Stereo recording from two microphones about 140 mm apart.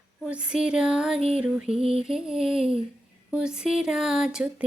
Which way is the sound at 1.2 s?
45° right (ahead or behind).